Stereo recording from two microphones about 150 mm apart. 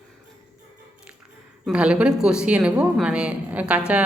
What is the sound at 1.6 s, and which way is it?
Speech, 5° right (ahead or behind).